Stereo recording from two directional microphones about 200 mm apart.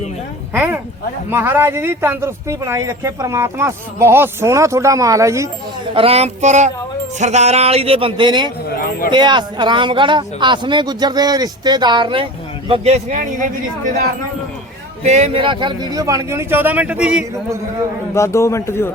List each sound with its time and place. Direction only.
0.5 s speech: 10° right (ahead or behind)
5.9 s a sound: 30° right (ahead or behind)
7.2 s speech: 35° right (ahead or behind)
15.0 s speech: 35° right (ahead or behind); by 17.2 s 5° right (ahead or behind)
18.1 s a man's voice: 15° left (ahead or behind)